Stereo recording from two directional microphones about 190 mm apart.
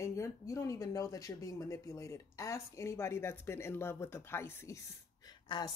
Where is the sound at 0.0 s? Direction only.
15° left (ahead or behind).